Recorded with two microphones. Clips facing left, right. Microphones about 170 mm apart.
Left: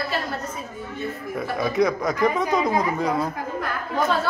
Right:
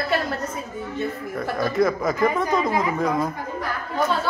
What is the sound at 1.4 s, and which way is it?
Speech, centre (ahead or behind).